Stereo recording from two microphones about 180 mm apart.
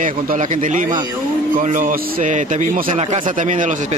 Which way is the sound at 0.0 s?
45° right (ahead or behind).